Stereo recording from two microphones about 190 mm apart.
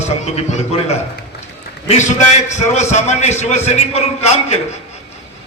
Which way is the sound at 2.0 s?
40° left (ahead or behind).